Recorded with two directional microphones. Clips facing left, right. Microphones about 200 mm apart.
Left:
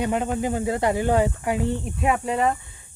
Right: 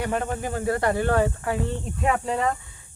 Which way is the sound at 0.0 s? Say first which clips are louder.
Left 3 dB; 15° left (ahead or behind).